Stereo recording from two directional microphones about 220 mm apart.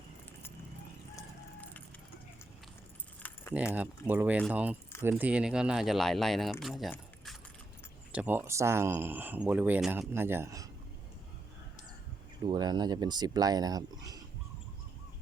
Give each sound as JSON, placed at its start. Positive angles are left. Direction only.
{"t": 3.2, "sound": "keys jangling", "side_deg": 5}
{"t": 3.8, "sound": "speech", "side_deg": -10}
{"t": 12.5, "sound": "speech", "side_deg": -20}